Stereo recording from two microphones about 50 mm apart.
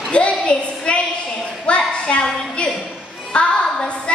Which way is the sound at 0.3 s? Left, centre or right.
Left.